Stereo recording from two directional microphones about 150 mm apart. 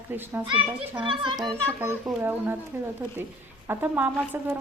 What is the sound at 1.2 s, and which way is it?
Speech, 30° right (ahead or behind).